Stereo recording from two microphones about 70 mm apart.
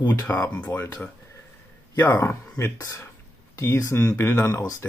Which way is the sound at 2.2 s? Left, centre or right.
Left.